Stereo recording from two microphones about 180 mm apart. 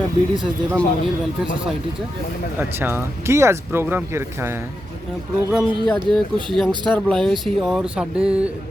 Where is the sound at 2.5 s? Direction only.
10° right (ahead or behind).